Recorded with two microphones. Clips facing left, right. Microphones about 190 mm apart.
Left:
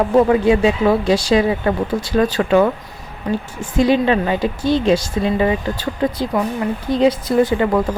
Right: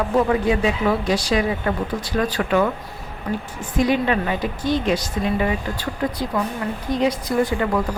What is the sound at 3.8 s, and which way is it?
Speech, 30° left (ahead or behind).